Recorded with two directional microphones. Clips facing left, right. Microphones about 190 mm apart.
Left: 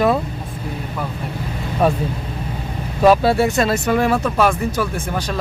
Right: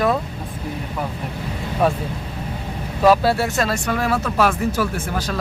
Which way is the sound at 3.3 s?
Centre (ahead or behind).